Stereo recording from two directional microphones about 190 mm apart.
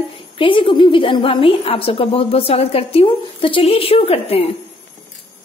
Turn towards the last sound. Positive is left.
turn(degrees=30)  # may be behind; listen again after turning